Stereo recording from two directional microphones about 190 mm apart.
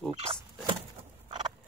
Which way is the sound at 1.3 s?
20° right (ahead or behind).